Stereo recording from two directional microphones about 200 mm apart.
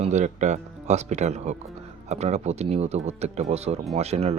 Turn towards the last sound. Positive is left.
turn(degrees=-30)  # may be behind; listen again after turning